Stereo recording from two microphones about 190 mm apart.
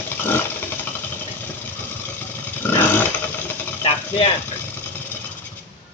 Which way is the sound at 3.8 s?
30° left (ahead or behind).